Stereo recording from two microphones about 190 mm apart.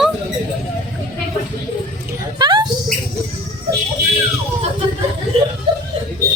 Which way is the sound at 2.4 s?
25° right (ahead or behind).